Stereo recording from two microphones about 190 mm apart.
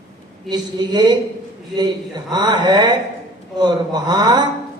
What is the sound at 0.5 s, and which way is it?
Speech, 20° right (ahead or behind).